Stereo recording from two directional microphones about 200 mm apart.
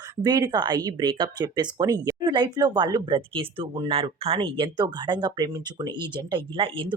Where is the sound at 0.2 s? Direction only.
20° right (ahead or behind).